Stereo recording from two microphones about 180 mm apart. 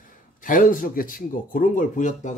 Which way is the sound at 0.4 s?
50° left (ahead or behind).